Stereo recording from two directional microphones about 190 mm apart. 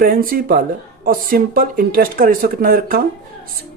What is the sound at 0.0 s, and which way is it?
Speech, 50° right (ahead or behind).